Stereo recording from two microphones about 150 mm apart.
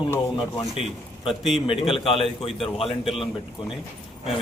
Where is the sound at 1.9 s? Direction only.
40° left (ahead or behind).